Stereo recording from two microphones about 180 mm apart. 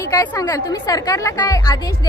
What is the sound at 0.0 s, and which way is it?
A woman's voice, 20° left (ahead or behind).